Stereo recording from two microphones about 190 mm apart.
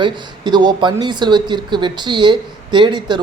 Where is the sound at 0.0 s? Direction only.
25° right (ahead or behind).